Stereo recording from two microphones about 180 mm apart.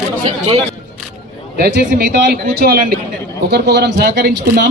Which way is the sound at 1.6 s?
60° right (ahead or behind).